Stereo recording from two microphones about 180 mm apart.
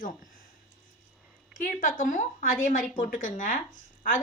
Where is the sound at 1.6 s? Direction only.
50° left (ahead or behind).